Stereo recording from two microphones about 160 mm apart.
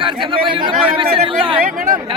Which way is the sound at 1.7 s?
55° right (ahead or behind).